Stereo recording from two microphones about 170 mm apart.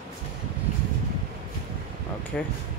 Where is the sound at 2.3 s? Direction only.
5° left (ahead or behind).